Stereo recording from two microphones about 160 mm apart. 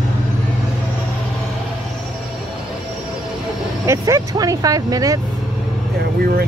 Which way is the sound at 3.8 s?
20° right (ahead or behind).